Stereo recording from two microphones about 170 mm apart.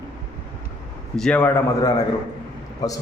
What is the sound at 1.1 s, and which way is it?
Speech, 5° left (ahead or behind).